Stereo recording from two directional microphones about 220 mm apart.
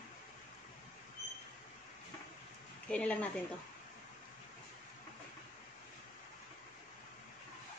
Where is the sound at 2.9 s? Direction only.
5° left (ahead or behind).